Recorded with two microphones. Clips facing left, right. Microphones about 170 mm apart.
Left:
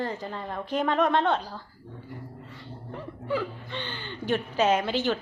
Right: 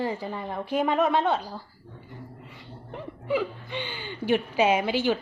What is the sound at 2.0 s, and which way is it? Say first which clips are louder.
Speech: left 1 dB; 15° right (ahead or behind).